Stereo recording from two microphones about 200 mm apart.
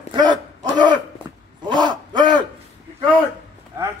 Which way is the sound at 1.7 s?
20° right (ahead or behind).